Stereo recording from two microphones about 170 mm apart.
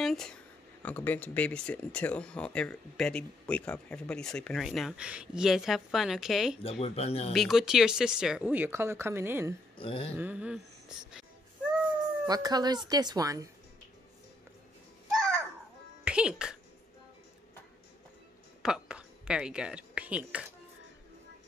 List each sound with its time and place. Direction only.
0.0 s a sound: centre (ahead or behind)
0.8 s speech: 10° left (ahead or behind)
6.6 s speech: 35° left (ahead or behind)
7.3 s speech: centre (ahead or behind)
9.8 s speech: 30° left (ahead or behind)
10.1 s speech: 10° right (ahead or behind)
12.3 s speech: 25° right (ahead or behind)
15.0 s babbling: 5° left (ahead or behind)
16.0 s music: 5° right (ahead or behind)
18.6 s speech: 5° right (ahead or behind)